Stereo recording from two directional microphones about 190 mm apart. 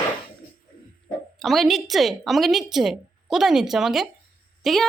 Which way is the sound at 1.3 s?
Centre (ahead or behind).